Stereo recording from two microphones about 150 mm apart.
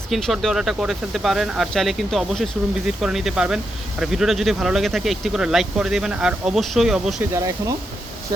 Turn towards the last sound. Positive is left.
turn(degrees=-20)  # may be behind; listen again after turning